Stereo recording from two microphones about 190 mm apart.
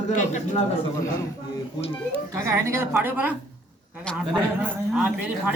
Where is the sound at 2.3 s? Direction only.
15° right (ahead or behind).